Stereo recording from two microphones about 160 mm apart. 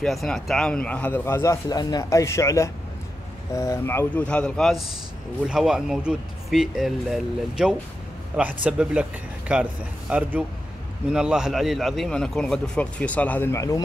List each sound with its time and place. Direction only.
0.0 s a man's voice: centre (ahead or behind); by 13.7 s 20° left (ahead or behind)